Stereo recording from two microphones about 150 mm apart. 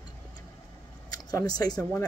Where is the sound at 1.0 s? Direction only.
25° left (ahead or behind).